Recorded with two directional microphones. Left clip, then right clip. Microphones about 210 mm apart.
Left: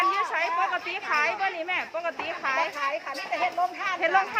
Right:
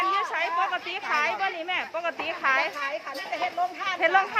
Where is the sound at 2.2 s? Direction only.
15° right (ahead or behind).